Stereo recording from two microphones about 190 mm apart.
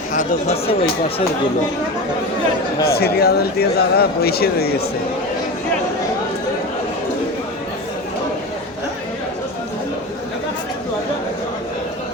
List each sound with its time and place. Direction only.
0.1 s speech: 40° left (ahead or behind)
2.8 s speech: 55° left (ahead or behind)